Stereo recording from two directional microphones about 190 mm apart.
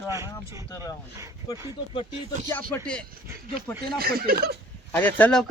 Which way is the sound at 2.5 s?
10° left (ahead or behind).